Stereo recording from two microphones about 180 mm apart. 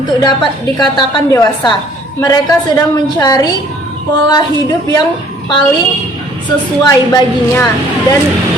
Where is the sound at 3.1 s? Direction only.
20° left (ahead or behind).